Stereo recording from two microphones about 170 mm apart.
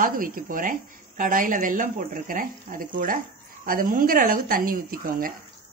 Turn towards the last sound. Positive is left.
turn(degrees=-55)  # may be behind; listen again after turning